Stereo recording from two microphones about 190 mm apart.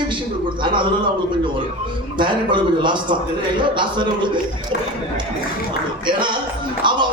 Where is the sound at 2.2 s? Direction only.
25° right (ahead or behind).